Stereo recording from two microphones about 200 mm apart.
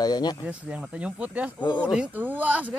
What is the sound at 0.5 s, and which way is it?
Speech, 5° right (ahead or behind).